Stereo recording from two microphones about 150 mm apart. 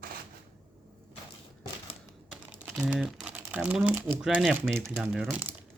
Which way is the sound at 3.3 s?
10° right (ahead or behind).